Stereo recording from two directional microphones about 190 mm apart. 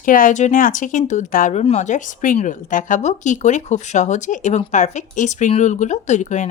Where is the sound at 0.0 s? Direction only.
45° left (ahead or behind).